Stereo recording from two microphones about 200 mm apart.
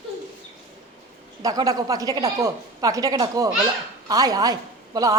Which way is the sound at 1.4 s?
20° right (ahead or behind).